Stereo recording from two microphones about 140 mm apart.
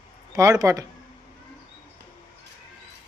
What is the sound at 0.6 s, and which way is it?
Speech, 25° right (ahead or behind).